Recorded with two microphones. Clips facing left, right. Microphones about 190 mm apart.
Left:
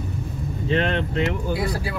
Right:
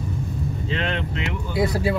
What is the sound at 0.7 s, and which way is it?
Speech, 35° left (ahead or behind).